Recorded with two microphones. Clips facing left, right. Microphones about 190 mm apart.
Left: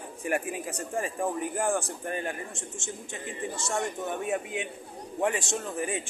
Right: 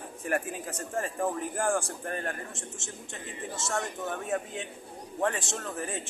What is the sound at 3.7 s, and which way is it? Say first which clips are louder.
A man's voice: left 2 dB; 15° left (ahead or behind).